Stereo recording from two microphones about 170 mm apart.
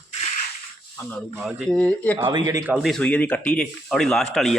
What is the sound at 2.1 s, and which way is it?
Speech, 25° right (ahead or behind).